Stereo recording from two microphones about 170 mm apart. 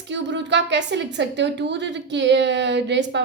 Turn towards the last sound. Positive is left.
turn(degrees=-90)